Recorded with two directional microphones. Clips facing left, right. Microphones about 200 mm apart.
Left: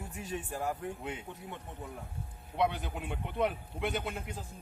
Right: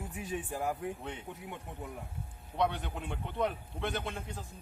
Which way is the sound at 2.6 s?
5° left (ahead or behind).